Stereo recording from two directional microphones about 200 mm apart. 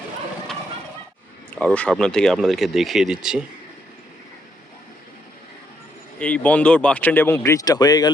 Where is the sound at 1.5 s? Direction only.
5° left (ahead or behind).